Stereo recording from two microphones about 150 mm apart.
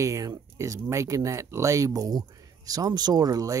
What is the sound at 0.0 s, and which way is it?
Speech, 20° right (ahead or behind).